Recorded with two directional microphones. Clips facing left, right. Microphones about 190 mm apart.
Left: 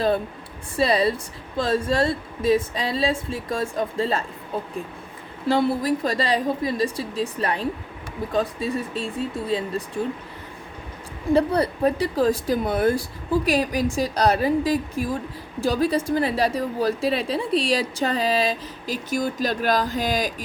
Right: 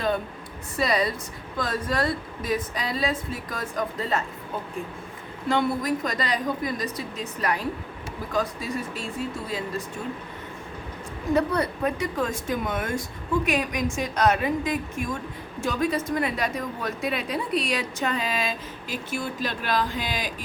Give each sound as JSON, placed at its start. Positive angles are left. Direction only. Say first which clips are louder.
{"t": 0.8, "sound": "a woman's voice", "louder": "left 4 dB", "side_deg": 30}
{"t": 5.5, "sound": "a woman's voice", "louder": "left 3 dB", "side_deg": 30}
{"t": 11.3, "sound": "a woman's voice", "louder": "left 4 dB", "side_deg": 30}